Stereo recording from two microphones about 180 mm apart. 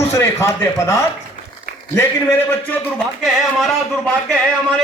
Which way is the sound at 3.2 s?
Centre (ahead or behind).